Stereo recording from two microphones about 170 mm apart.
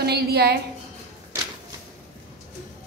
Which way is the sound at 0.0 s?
70° right (ahead or behind).